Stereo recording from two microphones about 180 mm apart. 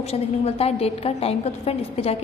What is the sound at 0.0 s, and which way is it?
A woman's voice, 35° left (ahead or behind).